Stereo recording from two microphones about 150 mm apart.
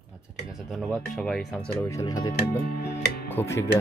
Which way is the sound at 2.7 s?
90° left.